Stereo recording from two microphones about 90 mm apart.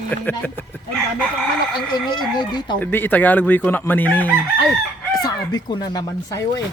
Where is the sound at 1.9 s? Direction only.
55° left (ahead or behind).